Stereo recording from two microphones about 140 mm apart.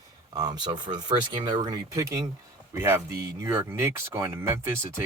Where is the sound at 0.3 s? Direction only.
30° right (ahead or behind).